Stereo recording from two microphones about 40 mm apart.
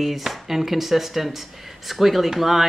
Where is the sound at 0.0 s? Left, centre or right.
Centre.